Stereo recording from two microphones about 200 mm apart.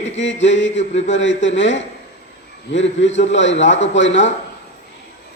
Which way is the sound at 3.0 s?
65° left (ahead or behind).